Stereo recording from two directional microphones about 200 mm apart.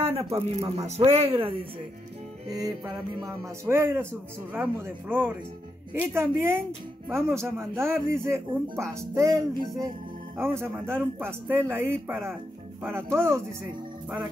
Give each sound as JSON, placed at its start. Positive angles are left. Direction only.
{"t": 0.1, "sound": "speech", "side_deg": -30}
{"t": 2.4, "sound": "speech", "side_deg": -20}